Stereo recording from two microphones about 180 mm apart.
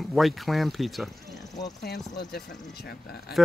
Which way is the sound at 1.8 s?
65° left (ahead or behind).